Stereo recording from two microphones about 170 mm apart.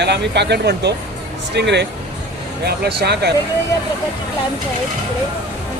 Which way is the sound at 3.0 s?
75° right (ahead or behind).